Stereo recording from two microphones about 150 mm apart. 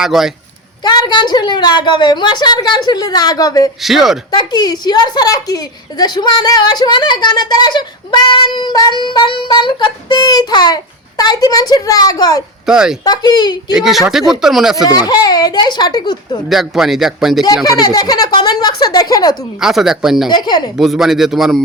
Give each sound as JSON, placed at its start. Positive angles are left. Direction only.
{"t": 0.0, "sound": "speech", "side_deg": 0}
{"t": 0.9, "sound": "a woman's voice", "side_deg": 30}
{"t": 3.8, "sound": "speech", "side_deg": 0}
{"t": 4.3, "sound": "a woman's voice", "side_deg": 25}
{"t": 12.6, "sound": "speech", "side_deg": -5}
{"t": 13.1, "sound": "a woman's voice", "side_deg": 30}
{"t": 13.7, "sound": "speech", "side_deg": 0}
{"t": 14.8, "sound": "a woman's voice", "side_deg": 25}
{"t": 16.5, "sound": "speech", "side_deg": 0}
{"t": 17.4, "sound": "a woman's voice", "side_deg": 25}
{"t": 19.5, "sound": "speech", "side_deg": -5}
{"t": 20.3, "sound": "a woman's voice", "side_deg": 30}
{"t": 20.7, "sound": "speech", "side_deg": 0}